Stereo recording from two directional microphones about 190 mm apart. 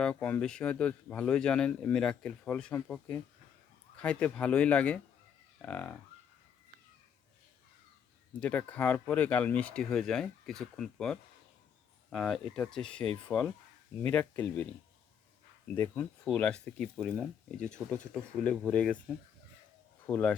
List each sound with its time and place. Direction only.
0.0 s speech: 5° left (ahead or behind)
8.4 s speech: 5° left (ahead or behind)
20.1 s speech: 5° left (ahead or behind)